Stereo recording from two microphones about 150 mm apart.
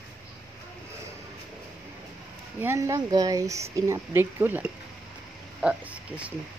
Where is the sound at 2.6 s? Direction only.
20° right (ahead or behind).